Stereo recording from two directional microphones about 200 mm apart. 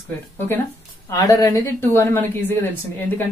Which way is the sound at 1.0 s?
15° left (ahead or behind).